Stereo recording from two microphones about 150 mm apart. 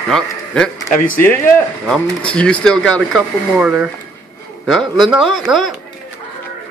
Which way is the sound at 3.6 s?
5° right (ahead or behind).